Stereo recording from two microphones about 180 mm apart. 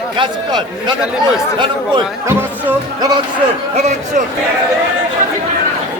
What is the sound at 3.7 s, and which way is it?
Speech, 40° right (ahead or behind).